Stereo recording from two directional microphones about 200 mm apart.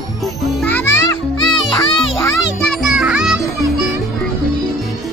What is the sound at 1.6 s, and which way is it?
Music, 25° left (ahead or behind).